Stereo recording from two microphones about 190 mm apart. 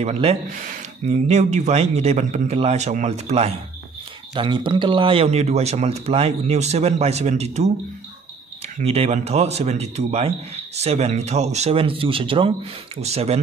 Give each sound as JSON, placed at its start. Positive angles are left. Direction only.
{"t": 0.0, "sound": "speech", "side_deg": -35}
{"t": 8.7, "sound": "speech", "side_deg": -30}